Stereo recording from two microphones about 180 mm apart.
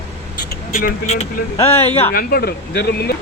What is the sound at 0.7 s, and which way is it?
Speech, 40° left (ahead or behind).